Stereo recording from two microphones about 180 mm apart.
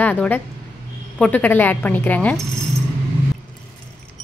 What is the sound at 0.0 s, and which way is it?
Speech, 10° left (ahead or behind).